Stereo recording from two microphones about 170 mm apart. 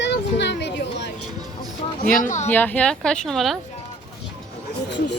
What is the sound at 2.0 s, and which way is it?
Speech, 50° left (ahead or behind).